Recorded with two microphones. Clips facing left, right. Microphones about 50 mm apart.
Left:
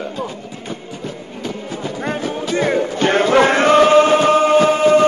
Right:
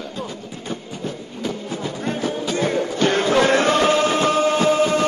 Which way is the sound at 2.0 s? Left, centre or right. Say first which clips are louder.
Left 2 dB; left.